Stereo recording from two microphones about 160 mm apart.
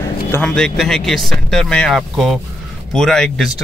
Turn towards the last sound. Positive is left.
turn(degrees=5)  # may be behind; listen again after turning